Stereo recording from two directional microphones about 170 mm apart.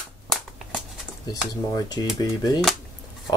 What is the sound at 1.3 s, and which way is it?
Speech, 20° left (ahead or behind).